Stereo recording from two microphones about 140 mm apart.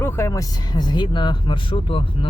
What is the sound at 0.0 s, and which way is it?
Speech, 15° left (ahead or behind).